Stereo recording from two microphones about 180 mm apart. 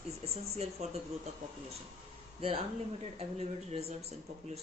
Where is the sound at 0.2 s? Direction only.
35° right (ahead or behind).